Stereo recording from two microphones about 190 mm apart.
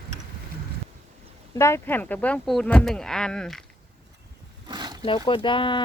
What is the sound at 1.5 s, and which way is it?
Speech, 15° left (ahead or behind).